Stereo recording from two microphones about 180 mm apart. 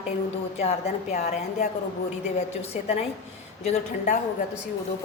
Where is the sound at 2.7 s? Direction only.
35° left (ahead or behind).